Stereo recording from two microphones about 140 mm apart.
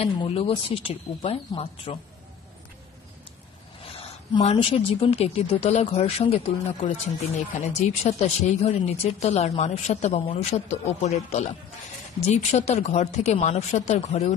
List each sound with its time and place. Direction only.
0.0 s speech: 40° left (ahead or behind)
4.4 s speech: 45° left (ahead or behind)